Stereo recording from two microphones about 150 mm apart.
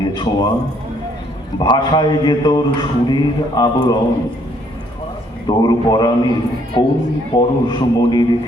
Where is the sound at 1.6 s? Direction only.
30° left (ahead or behind).